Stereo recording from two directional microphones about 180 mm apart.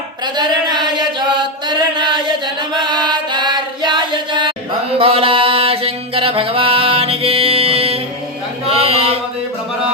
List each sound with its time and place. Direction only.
0.3 s chant: 25° right (ahead or behind)
2.7 s music: 25° right (ahead or behind)
8.7 s mantra: 30° right (ahead or behind)